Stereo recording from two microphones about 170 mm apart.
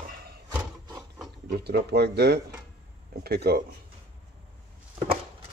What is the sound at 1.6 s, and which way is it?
Speech, 75° right (ahead or behind).